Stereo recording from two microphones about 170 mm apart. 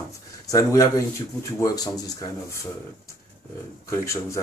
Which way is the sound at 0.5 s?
20° left (ahead or behind).